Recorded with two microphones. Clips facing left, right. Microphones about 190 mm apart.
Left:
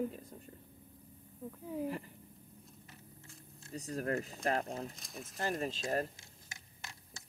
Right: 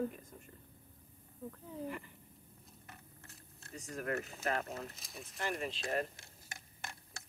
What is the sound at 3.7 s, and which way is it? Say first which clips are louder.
Speech: left 3 dB; 35° left (ahead or behind).